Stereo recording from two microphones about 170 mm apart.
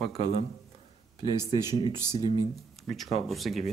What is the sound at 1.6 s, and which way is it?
Speech, 25° left (ahead or behind).